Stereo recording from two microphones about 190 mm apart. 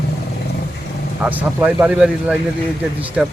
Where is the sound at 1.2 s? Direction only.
10° right (ahead or behind).